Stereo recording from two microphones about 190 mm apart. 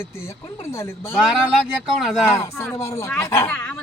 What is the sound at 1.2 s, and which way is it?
Speech, 5° right (ahead or behind).